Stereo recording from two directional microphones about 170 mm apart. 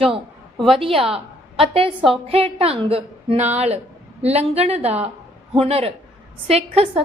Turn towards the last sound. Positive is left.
turn(degrees=-35)  # may be behind; listen again after turning